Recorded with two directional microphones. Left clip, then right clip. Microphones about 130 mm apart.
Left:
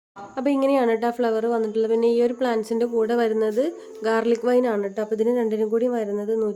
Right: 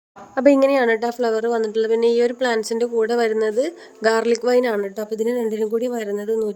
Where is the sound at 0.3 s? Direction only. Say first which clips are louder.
Right 6 dB; 45° right (ahead or behind).